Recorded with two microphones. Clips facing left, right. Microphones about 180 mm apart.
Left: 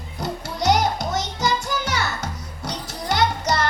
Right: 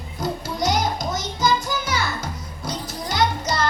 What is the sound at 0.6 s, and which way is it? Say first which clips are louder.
Music: left 3 dB; 70° left (ahead or behind).